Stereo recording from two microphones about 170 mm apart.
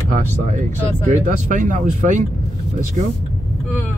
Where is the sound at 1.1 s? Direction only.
50° right (ahead or behind).